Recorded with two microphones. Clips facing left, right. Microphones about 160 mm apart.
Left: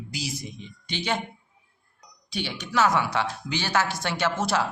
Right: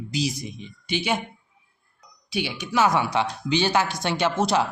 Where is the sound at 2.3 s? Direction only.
10° right (ahead or behind).